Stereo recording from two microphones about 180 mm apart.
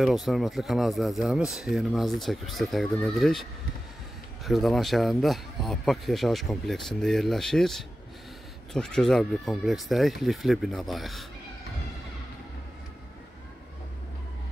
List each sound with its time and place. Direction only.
0.0 s speech: centre (ahead or behind)
4.5 s speech: centre (ahead or behind)